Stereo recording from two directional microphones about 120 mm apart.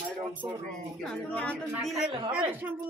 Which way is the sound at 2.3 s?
10° right (ahead or behind).